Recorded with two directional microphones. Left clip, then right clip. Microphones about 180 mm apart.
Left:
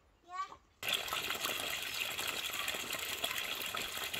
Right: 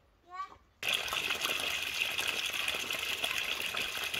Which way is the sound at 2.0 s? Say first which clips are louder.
Right 5 dB; 15° left (ahead or behind).